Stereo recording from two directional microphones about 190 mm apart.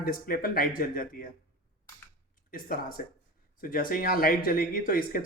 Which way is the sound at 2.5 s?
50° left (ahead or behind).